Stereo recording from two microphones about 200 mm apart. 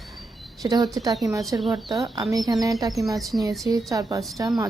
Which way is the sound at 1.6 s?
Centre (ahead or behind).